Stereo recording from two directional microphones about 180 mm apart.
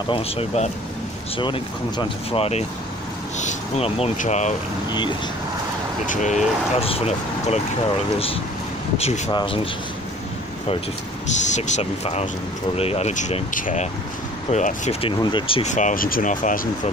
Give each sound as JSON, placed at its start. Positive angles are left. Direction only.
{"t": 0.1, "sound": "speech", "side_deg": 35}
{"t": 6.0, "sound": "speech", "side_deg": 40}
{"t": 8.9, "sound": "speech", "side_deg": 35}
{"t": 11.4, "sound": "speech", "side_deg": 40}
{"t": 15.0, "sound": "speech", "side_deg": 30}
{"t": 15.7, "sound": "speech", "side_deg": 45}